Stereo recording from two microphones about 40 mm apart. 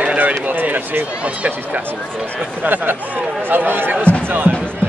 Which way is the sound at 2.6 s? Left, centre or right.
Right.